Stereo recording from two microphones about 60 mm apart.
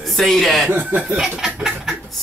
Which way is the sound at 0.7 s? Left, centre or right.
Right.